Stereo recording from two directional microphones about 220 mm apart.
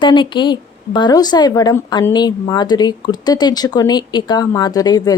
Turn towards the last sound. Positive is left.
turn(degrees=15)  # may be behind; listen again after turning